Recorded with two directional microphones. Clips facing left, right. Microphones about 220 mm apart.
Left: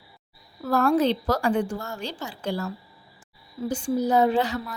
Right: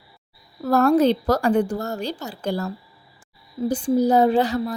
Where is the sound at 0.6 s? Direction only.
40° right (ahead or behind).